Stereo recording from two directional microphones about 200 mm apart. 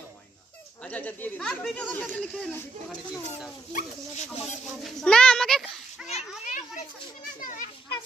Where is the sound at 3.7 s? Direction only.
40° left (ahead or behind).